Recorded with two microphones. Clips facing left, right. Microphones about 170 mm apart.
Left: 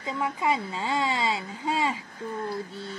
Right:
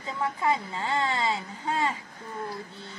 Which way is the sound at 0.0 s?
15° left (ahead or behind).